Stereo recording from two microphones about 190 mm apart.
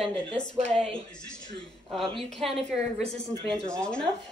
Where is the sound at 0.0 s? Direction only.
25° right (ahead or behind).